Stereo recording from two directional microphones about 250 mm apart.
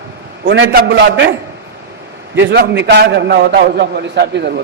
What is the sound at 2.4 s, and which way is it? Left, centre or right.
A man's voice, right.